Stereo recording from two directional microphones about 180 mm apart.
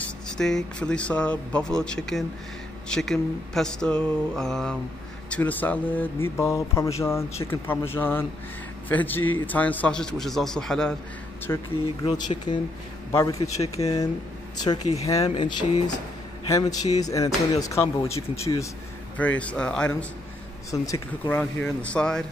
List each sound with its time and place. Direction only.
0.4 s speech: 5° left (ahead or behind)
11.4 s speech: 20° left (ahead or behind)
15.0 s speech: 15° left (ahead or behind)
20.7 s speech: 20° left (ahead or behind)